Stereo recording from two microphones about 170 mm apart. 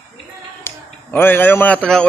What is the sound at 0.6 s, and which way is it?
A man's voice, 10° left (ahead or behind).